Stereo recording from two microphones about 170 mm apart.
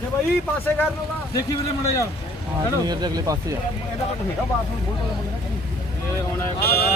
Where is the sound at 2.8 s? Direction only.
25° right (ahead or behind).